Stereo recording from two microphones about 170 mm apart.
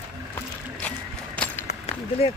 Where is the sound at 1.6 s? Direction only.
35° left (ahead or behind).